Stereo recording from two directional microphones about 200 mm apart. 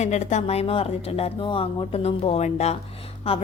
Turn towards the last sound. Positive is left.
turn(degrees=30)  # may be behind; listen again after turning